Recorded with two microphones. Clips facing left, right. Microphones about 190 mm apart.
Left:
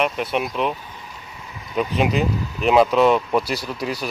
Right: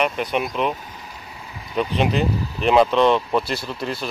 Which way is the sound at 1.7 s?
5° left (ahead or behind).